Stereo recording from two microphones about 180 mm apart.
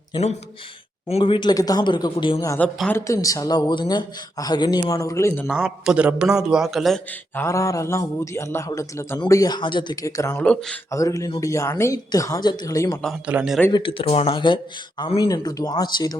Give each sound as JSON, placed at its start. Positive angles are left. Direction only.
{"t": 0.1, "sound": "speech", "side_deg": 35}
{"t": 2.4, "sound": "a man's voice", "side_deg": 15}
{"t": 5.5, "sound": "a man's voice", "side_deg": -5}
{"t": 7.3, "sound": "a man's voice", "side_deg": 15}
{"t": 10.3, "sound": "a man's voice", "side_deg": 5}
{"t": 10.9, "sound": "a man's voice", "side_deg": 20}
{"t": 13.0, "sound": "a man's voice", "side_deg": 0}
{"t": 13.7, "sound": "speech", "side_deg": 30}